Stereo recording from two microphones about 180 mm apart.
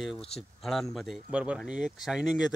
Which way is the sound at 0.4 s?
Centre (ahead or behind).